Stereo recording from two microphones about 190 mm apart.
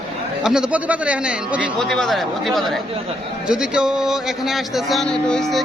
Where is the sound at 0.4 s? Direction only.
5° right (ahead or behind).